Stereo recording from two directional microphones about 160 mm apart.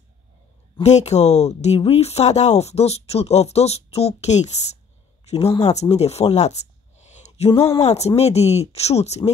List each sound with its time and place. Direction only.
0.7 s speech: 45° left (ahead or behind)
5.5 s speech: 20° left (ahead or behind)
5.8 s speech: 40° left (ahead or behind)
7.5 s speech: 15° left (ahead or behind)
7.8 s speech: 40° left (ahead or behind)